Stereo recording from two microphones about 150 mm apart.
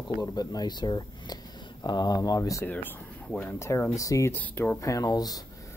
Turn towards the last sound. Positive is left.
turn(degrees=25)  # may be behind; listen again after turning